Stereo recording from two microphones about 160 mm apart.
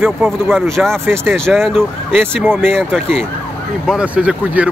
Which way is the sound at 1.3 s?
5° left (ahead or behind).